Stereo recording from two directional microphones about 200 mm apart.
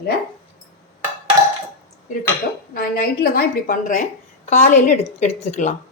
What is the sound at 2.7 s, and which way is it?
A woman's voice, 50° left (ahead or behind).